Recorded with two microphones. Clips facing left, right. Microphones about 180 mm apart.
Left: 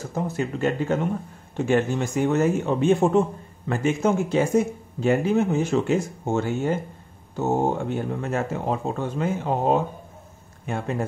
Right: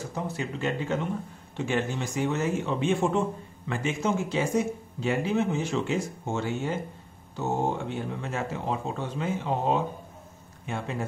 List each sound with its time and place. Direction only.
0.1 s a man's voice: 45° left (ahead or behind)